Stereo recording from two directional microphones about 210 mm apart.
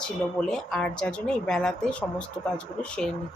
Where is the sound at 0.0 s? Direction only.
5° left (ahead or behind).